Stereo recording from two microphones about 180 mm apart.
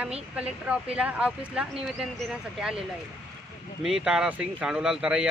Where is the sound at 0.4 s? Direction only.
5° right (ahead or behind).